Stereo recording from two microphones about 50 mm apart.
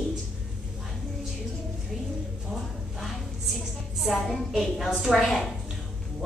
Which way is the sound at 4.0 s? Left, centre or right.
Centre.